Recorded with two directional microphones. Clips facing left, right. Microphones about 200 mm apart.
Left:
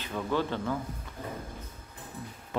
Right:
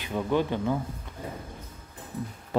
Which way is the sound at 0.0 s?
15° right (ahead or behind).